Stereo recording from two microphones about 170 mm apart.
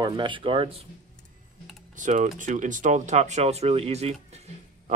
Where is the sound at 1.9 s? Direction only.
45° right (ahead or behind).